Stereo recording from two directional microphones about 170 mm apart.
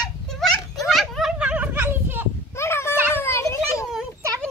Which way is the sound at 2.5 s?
15° left (ahead or behind).